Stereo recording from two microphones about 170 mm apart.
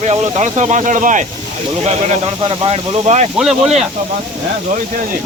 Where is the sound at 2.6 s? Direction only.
40° right (ahead or behind).